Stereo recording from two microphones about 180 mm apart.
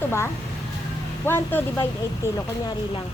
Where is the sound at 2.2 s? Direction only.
15° right (ahead or behind).